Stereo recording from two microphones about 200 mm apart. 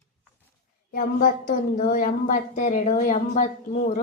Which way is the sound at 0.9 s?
45° left (ahead or behind).